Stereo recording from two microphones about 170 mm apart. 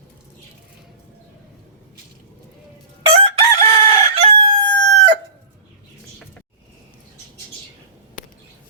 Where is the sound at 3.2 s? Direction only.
35° right (ahead or behind).